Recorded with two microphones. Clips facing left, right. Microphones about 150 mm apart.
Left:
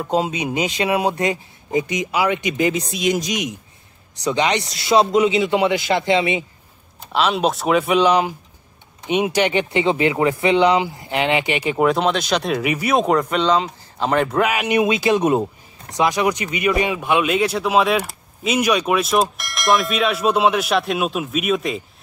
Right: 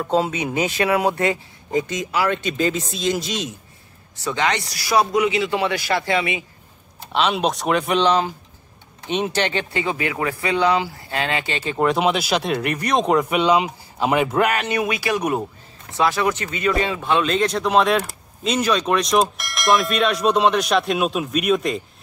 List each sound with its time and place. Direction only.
0.1 s speech: 15° left (ahead or behind)
7.0 s speech: centre (ahead or behind)
11.8 s speech: 5° right (ahead or behind)
14.6 s speech: 20° left (ahead or behind); by 21.8 s centre (ahead or behind)